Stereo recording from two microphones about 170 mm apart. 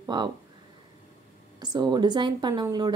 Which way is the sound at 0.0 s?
25° right (ahead or behind).